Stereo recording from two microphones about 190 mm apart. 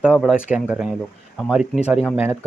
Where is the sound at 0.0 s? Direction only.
5° right (ahead or behind).